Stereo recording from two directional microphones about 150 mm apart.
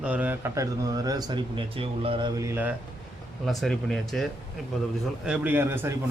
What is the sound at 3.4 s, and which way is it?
Speech, centre (ahead or behind).